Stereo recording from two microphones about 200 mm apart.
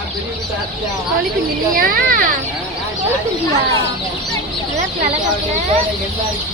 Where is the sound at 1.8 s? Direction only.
45° right (ahead or behind).